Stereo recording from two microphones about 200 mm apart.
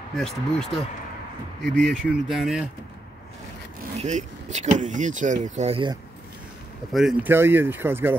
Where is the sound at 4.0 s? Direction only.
35° right (ahead or behind).